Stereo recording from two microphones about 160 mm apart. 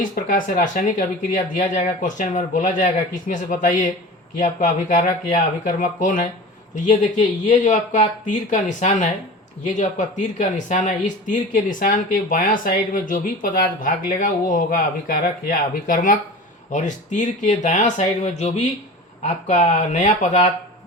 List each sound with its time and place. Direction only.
0.0 s speech: 55° left (ahead or behind)